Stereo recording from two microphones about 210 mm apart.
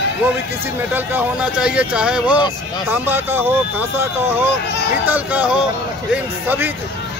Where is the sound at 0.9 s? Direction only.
5° right (ahead or behind).